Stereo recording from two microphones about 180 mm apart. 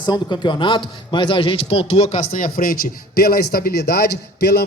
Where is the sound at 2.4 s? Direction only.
55° left (ahead or behind).